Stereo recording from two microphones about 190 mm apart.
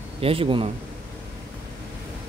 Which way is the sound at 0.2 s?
30° right (ahead or behind).